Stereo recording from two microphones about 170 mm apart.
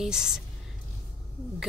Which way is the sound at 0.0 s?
5° right (ahead or behind).